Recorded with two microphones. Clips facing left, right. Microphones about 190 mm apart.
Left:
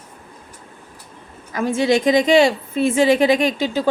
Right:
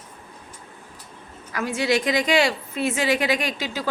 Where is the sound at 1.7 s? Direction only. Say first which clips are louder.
Left 6 dB; 25° left (ahead or behind).